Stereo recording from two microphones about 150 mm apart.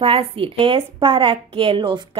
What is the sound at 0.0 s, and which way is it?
A woman's voice, 40° right (ahead or behind).